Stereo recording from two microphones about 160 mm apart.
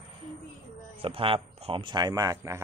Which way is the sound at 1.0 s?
35° right (ahead or behind).